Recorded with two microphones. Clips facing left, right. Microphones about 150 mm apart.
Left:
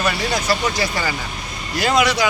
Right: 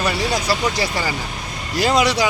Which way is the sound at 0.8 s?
30° right (ahead or behind).